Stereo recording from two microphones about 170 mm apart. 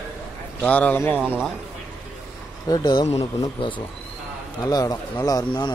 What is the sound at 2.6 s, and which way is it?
Speech, 25° left (ahead or behind).